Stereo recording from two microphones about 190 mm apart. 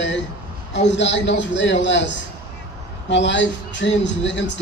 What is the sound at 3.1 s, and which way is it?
A man's voice, 70° left (ahead or behind).